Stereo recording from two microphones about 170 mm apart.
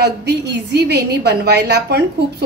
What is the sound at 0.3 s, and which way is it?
A woman's voice, 75° right (ahead or behind).